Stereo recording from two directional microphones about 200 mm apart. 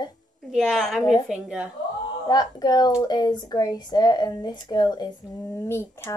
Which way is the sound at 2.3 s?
20° left (ahead or behind).